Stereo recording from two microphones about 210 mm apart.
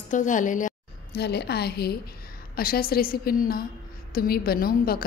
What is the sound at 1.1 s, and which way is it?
A woman's voice, 50° left (ahead or behind).